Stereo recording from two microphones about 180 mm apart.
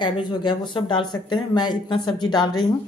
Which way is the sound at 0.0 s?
25° left (ahead or behind).